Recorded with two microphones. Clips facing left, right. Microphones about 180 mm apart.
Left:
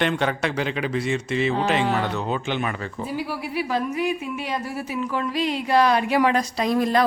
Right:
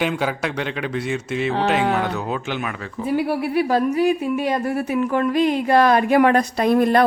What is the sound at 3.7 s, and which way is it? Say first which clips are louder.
Speech: right 5 dB; 35° right (ahead or behind).